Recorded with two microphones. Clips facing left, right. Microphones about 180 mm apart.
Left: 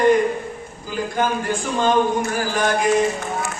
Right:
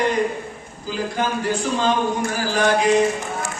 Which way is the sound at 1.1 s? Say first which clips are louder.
Left 1 dB; 50° left (ahead or behind).